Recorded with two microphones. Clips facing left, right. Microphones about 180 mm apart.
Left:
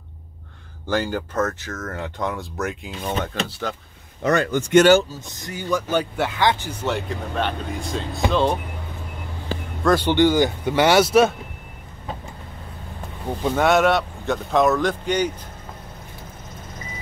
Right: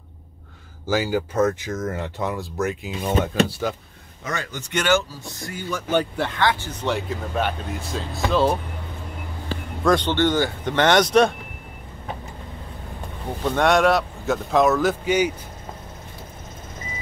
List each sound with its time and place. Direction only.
0.8 s speech: 5° right (ahead or behind)
2.0 s speech: 5° right (ahead or behind)
4.2 s speech: 65° left (ahead or behind); by 5.0 s 40° left (ahead or behind)
5.2 s speech: 20° left (ahead or behind)
7.1 s speech: 5° right (ahead or behind)
9.8 s speech: 10° left (ahead or behind)
13.4 s speech: 5° left (ahead or behind)